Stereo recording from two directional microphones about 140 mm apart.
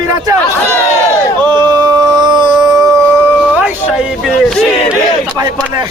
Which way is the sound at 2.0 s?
35° right (ahead or behind).